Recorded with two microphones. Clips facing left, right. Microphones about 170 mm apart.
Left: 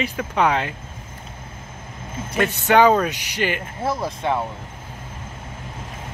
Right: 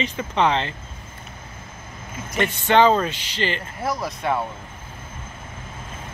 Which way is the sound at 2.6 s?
10° left (ahead or behind).